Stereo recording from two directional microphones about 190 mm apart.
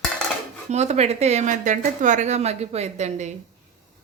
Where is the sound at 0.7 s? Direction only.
35° right (ahead or behind).